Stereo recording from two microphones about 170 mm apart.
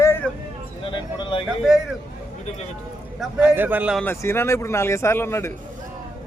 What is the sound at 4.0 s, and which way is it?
Speech, 15° left (ahead or behind).